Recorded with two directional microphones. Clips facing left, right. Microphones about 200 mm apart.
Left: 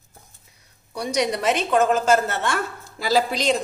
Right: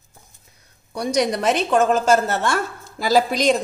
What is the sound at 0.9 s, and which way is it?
A woman's voice, 45° right (ahead or behind).